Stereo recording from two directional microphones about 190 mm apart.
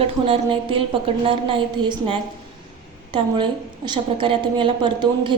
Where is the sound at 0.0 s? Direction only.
30° right (ahead or behind).